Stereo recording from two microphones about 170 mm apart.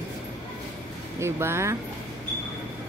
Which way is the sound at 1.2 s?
15° right (ahead or behind).